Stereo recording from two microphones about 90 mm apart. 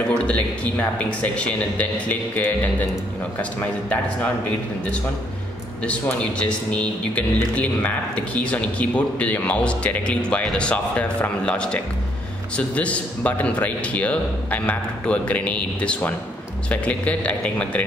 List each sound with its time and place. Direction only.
0.1 s a man's voice: 15° left (ahead or behind)
5.9 s a man's voice: 15° left (ahead or behind)